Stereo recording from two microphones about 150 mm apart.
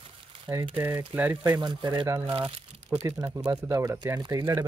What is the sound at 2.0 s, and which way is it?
Speech, 15° right (ahead or behind).